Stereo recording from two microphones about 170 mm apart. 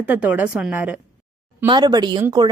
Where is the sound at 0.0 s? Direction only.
10° right (ahead or behind).